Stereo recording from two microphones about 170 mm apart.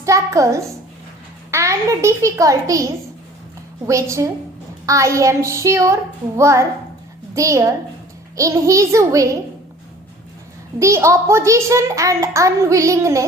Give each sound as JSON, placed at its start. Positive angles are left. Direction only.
{"t": 0.0, "sound": "a sound", "side_deg": -20}
{"t": 1.5, "sound": "a child's voice", "side_deg": -15}
{"t": 10.8, "sound": "a child's voice", "side_deg": -15}